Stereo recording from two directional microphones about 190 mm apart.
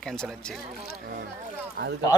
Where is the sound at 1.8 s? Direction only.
60° right (ahead or behind).